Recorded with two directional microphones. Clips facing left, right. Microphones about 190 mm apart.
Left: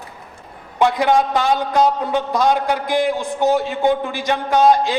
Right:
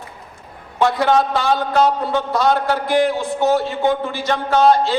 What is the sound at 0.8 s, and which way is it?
A man's voice, 15° left (ahead or behind).